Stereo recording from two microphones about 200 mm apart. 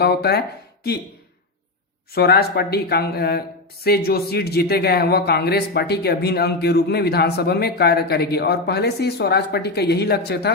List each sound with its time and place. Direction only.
0.0 s speech: 55° left (ahead or behind)
2.1 s speech: 50° left (ahead or behind)